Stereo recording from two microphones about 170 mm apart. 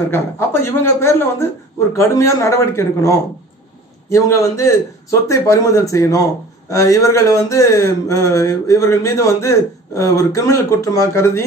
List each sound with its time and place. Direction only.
0.1 s speech: 15° left (ahead or behind)